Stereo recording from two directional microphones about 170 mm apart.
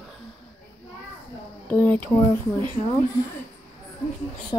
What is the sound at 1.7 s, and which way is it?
Speech, 10° left (ahead or behind).